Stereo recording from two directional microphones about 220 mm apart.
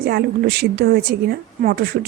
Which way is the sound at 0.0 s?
45° right (ahead or behind).